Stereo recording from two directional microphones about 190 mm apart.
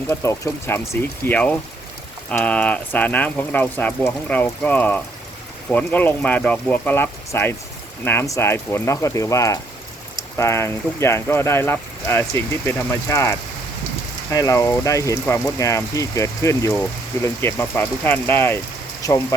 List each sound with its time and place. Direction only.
0.1 s speech: 15° left (ahead or behind)